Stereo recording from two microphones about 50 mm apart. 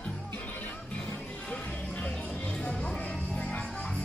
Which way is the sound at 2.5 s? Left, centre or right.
Centre.